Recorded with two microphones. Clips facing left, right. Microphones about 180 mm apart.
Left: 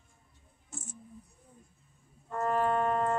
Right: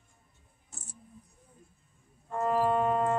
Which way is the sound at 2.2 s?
10° right (ahead or behind).